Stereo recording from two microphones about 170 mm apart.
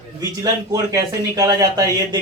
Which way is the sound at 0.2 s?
20° right (ahead or behind).